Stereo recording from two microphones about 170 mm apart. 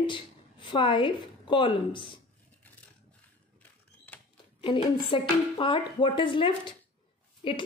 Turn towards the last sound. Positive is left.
turn(degrees=30)  # may be behind; listen again after turning